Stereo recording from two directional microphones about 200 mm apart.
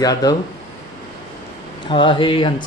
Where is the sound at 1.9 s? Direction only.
25° left (ahead or behind).